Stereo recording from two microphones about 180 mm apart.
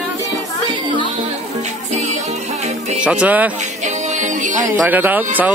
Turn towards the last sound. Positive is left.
turn(degrees=-10)  # may be behind; listen again after turning